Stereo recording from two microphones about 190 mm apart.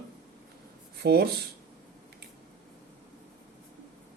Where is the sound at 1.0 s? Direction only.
55° right (ahead or behind).